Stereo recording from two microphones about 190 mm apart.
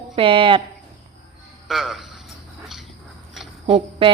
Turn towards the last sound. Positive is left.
turn(degrees=-30)  # may be behind; listen again after turning